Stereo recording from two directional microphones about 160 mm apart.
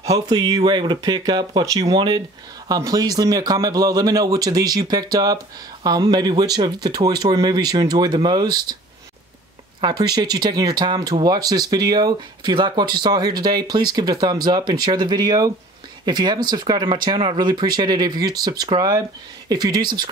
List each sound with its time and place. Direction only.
0.0 s speech: 25° right (ahead or behind)
9.8 s speech: 25° right (ahead or behind)